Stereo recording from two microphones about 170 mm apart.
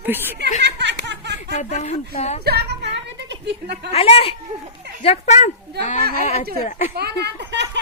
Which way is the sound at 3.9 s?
35° left (ahead or behind).